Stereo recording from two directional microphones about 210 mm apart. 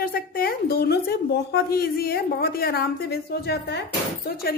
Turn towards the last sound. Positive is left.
turn(degrees=45)  # may be behind; listen again after turning